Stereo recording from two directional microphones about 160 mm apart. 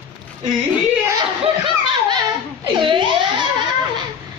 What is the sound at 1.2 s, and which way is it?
Snicker, 30° right (ahead or behind).